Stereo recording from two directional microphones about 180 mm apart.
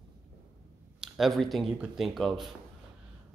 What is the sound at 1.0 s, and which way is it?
A man's voice, centre (ahead or behind).